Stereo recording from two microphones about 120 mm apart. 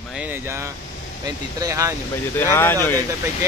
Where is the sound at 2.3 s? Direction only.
20° left (ahead or behind).